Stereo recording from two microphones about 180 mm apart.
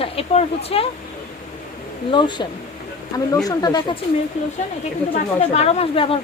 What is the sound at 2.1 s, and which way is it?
Speech, 25° left (ahead or behind).